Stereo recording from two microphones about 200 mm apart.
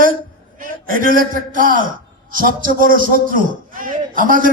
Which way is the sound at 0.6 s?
45° right (ahead or behind).